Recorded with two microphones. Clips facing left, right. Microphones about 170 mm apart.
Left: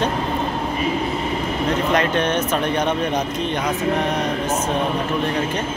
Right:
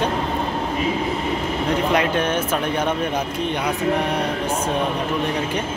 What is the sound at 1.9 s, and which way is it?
Speech, 10° right (ahead or behind).